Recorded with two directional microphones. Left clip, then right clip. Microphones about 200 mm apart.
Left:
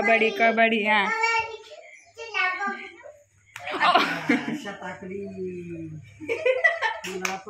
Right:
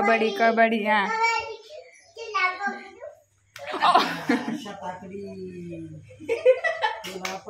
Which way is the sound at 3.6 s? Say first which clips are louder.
Even; 10° right (ahead or behind).